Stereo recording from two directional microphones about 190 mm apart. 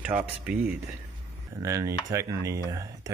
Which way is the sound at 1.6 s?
15° right (ahead or behind).